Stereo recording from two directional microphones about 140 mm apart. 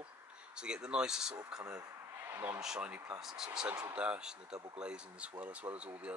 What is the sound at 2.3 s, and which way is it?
Speech, 15° right (ahead or behind).